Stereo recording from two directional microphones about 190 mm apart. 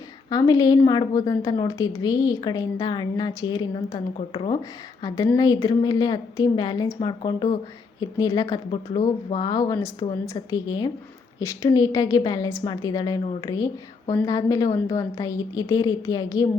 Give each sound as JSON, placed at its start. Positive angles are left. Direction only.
{"t": 0.3, "sound": "a woman's voice", "side_deg": 20}